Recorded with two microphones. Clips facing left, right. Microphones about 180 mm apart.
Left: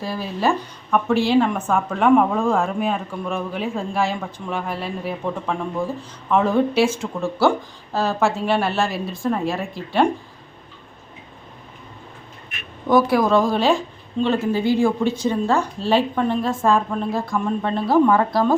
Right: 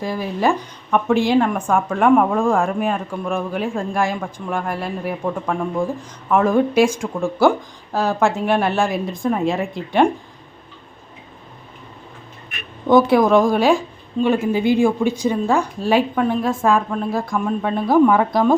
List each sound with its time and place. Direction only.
0.0 s a woman's voice: 15° right (ahead or behind)
2.0 s speech: centre (ahead or behind)
2.4 s a woman's voice: 10° right (ahead or behind)
12.9 s a woman's voice: 20° right (ahead or behind)